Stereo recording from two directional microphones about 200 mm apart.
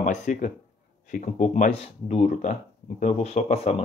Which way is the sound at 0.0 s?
40° left (ahead or behind).